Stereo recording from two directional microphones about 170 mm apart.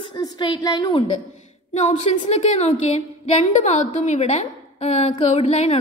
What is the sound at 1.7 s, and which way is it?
A woman's voice, 40° left (ahead or behind).